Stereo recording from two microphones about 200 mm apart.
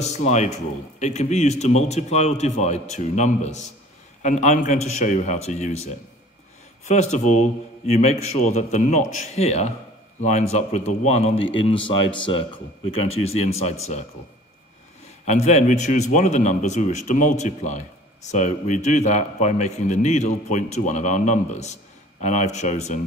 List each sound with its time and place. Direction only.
0.0 s a man's voice: 35° left (ahead or behind)
15.2 s a man's voice: 35° left (ahead or behind)